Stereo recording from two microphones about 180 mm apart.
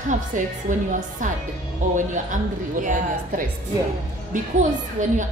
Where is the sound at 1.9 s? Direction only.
45° right (ahead or behind).